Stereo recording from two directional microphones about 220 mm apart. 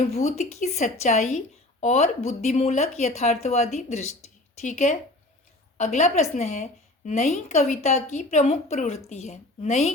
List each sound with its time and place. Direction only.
0.0 s a woman's voice: 30° left (ahead or behind)